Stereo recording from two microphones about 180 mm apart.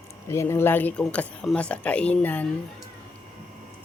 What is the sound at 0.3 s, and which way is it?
Speech, 15° left (ahead or behind).